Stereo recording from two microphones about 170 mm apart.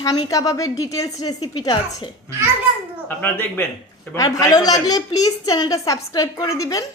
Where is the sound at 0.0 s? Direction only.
20° left (ahead or behind).